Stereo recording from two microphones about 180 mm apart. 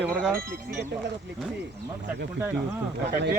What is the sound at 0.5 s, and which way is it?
Speech, 70° right (ahead or behind).